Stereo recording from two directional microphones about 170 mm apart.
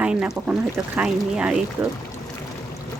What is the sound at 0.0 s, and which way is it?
Speech, 5° right (ahead or behind).